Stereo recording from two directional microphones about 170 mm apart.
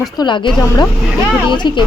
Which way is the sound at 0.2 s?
30° left (ahead or behind).